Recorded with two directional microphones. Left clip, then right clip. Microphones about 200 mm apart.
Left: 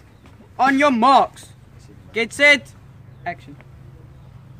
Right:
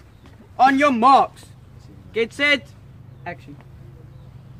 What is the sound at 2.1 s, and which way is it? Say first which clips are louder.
A man's voice: left 4 dB; 50° left (ahead or behind).